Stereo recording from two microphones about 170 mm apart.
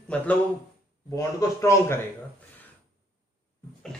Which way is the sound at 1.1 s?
20° left (ahead or behind).